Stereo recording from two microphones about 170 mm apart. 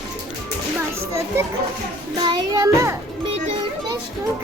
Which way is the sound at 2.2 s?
25° right (ahead or behind).